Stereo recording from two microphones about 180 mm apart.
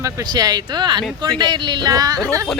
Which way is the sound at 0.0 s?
20° right (ahead or behind).